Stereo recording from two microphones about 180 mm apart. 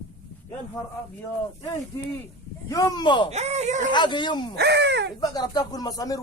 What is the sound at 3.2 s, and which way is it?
Speech, 40° right (ahead or behind).